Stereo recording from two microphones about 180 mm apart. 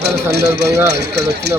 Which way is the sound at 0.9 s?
65° right (ahead or behind).